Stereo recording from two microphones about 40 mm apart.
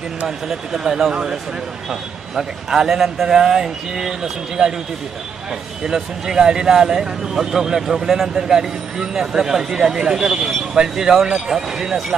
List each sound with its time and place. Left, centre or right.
0.7 s a man's voice: centre
5.9 s a man's voice: centre